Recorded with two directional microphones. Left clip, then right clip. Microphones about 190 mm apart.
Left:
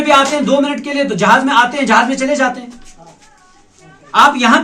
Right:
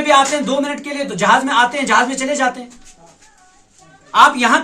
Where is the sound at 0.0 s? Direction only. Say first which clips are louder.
Left 2 dB; 20° right (ahead or behind).